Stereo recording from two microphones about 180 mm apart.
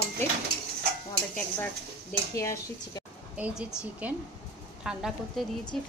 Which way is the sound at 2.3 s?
15° left (ahead or behind).